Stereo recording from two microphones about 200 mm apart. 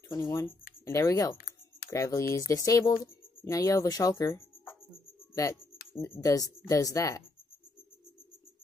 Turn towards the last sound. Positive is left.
turn(degrees=15)  # may be behind; listen again after turning